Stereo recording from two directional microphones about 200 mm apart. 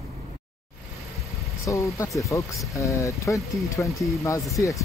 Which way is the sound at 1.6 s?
15° left (ahead or behind).